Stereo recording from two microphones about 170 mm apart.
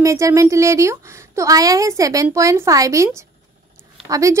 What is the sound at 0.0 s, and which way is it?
A woman's voice, 15° right (ahead or behind).